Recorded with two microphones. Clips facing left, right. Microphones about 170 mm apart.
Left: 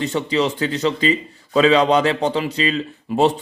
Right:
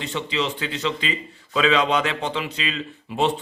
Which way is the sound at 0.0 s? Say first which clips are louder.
Left 6 dB; 40° left (ahead or behind).